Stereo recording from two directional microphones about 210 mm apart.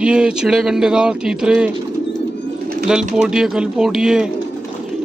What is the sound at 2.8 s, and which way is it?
Speech, 5° right (ahead or behind).